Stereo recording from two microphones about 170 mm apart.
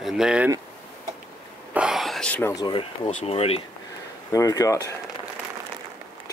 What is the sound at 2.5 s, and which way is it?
Speech, 30° left (ahead or behind).